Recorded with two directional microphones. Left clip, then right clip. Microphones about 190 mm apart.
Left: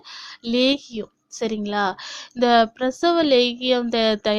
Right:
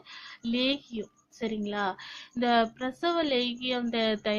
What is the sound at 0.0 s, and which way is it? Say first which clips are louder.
A woman's voice: left 6 dB; 45° left (ahead or behind).